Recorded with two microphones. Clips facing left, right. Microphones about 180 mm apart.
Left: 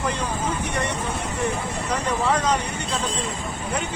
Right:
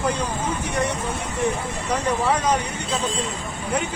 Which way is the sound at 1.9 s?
10° right (ahead or behind).